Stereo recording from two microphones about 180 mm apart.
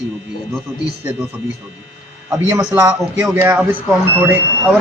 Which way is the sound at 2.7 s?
15° right (ahead or behind).